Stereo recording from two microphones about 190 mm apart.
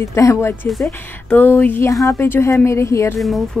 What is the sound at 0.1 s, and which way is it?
Speech, 15° left (ahead or behind).